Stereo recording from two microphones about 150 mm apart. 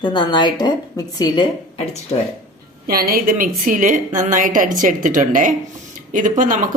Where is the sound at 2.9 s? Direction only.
85° right.